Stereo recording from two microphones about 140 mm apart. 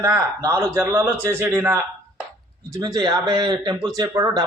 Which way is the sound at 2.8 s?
30° right (ahead or behind).